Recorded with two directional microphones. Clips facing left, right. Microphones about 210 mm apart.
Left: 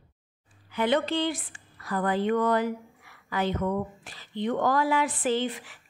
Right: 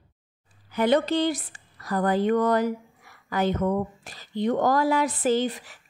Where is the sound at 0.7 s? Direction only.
40° right (ahead or behind).